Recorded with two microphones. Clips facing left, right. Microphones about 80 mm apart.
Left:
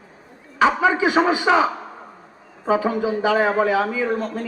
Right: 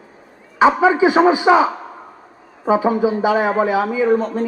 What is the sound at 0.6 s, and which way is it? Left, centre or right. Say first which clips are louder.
A man's voice: right 4 dB; right.